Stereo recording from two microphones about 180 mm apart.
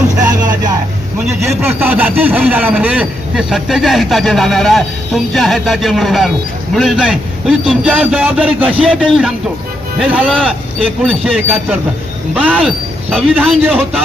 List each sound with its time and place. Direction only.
0.2 s vehicle: 20° right (ahead or behind)
1.6 s speech: 10° right (ahead or behind)
11.3 s speech: 10° right (ahead or behind)